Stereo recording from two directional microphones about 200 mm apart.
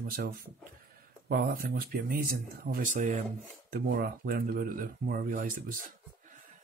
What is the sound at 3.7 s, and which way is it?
Speech, 50° right (ahead or behind).